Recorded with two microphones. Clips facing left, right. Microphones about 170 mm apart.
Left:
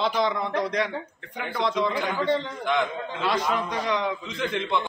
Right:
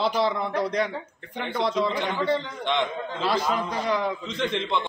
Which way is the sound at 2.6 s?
25° right (ahead or behind).